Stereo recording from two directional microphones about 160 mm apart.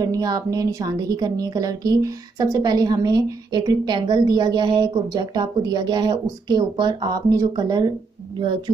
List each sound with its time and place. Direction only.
0.0 s a woman's voice: 25° right (ahead or behind)